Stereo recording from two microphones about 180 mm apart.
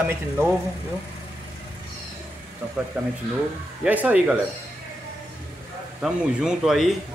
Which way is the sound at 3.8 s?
10° right (ahead or behind).